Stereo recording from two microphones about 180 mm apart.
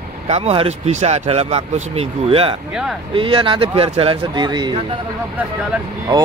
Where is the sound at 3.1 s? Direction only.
30° right (ahead or behind).